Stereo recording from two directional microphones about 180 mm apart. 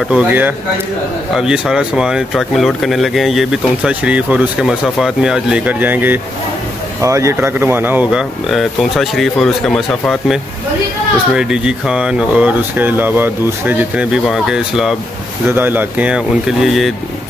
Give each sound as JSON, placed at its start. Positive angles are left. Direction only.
{"t": 0.1, "sound": "speech", "side_deg": -10}